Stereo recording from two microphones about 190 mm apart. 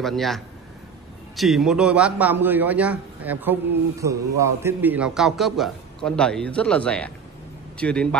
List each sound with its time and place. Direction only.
0.0 s a man's voice: centre (ahead or behind)